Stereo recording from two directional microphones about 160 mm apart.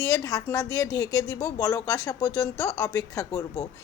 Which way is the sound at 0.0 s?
20° left (ahead or behind).